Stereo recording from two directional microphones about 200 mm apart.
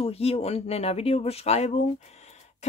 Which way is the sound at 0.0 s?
30° left (ahead or behind).